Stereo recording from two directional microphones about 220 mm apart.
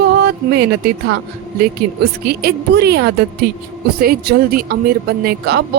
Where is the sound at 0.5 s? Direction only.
45° right (ahead or behind).